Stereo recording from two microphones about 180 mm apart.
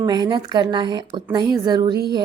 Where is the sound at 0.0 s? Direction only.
20° right (ahead or behind).